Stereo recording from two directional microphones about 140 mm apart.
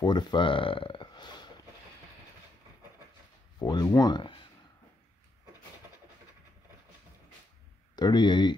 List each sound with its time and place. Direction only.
0.0 s speech: 30° left (ahead or behind)
3.5 s speech: 30° left (ahead or behind)
7.9 s speech: 30° left (ahead or behind)